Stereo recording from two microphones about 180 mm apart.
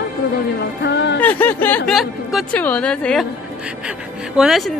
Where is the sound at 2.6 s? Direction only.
5° left (ahead or behind).